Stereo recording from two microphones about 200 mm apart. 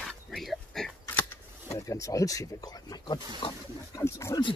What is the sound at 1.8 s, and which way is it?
Speech, 15° left (ahead or behind).